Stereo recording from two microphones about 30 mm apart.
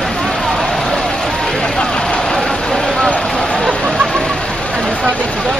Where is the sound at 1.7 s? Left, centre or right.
Left.